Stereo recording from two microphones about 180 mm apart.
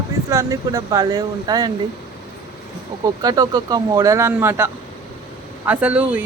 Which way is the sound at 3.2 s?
20° right (ahead or behind).